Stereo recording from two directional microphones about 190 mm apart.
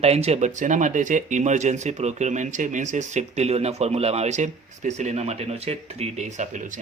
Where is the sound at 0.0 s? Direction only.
35° right (ahead or behind).